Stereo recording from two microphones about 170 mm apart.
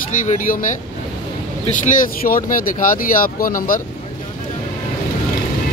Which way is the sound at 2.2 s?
55° left (ahead or behind).